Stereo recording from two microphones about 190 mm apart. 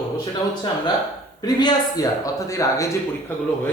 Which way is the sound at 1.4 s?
20° left (ahead or behind).